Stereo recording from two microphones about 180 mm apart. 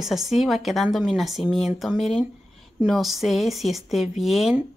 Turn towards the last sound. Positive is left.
turn(degrees=0)  # may be behind; listen again after turning